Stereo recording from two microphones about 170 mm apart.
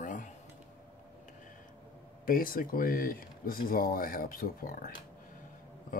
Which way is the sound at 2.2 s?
55° left (ahead or behind).